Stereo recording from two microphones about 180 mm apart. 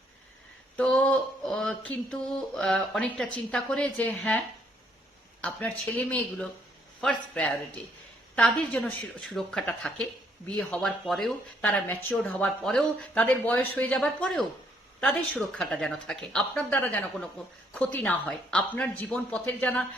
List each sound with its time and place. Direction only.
0.8 s a sound: 5° left (ahead or behind)
2.0 s speech: 5° left (ahead or behind)
5.4 s speech: 5° left (ahead or behind)